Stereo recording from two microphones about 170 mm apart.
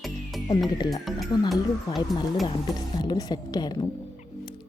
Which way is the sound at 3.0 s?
25° left (ahead or behind).